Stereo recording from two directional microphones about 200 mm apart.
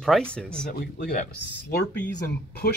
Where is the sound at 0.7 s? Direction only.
55° left (ahead or behind).